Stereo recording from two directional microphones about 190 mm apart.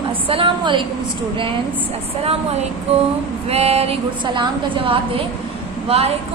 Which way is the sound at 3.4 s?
35° right (ahead or behind).